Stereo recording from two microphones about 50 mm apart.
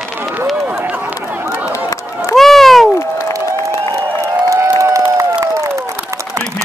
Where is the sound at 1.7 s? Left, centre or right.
Left.